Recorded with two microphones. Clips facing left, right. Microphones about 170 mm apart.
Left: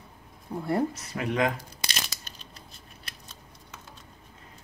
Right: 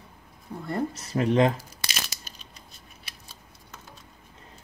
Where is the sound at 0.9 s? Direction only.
30° right (ahead or behind).